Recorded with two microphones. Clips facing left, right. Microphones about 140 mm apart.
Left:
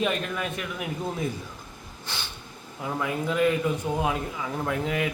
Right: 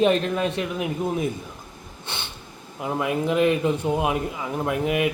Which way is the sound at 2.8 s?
20° right (ahead or behind).